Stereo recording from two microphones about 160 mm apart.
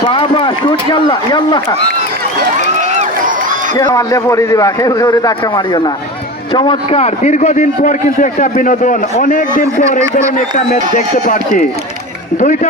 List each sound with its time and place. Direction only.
0.0 s a man's voice: 30° left (ahead or behind)
2.9 s run: 50° right (ahead or behind)
3.8 s a man's voice: 20° left (ahead or behind); by 9.8 s 60° left (ahead or behind)
10.0 s speech: 15° right (ahead or behind)
10.3 s a man's voice: 50° left (ahead or behind)